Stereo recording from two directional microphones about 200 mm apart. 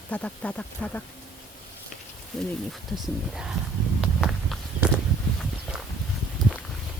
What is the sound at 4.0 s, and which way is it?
Walk, centre (ahead or behind).